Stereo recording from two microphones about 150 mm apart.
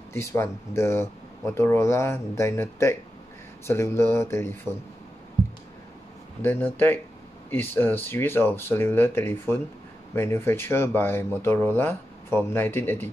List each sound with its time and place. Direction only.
0.1 s speech: 15° left (ahead or behind)
6.4 s speech: 15° left (ahead or behind)